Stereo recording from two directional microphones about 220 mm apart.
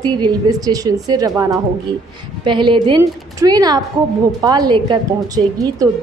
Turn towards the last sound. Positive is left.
turn(degrees=-15)  # may be behind; listen again after turning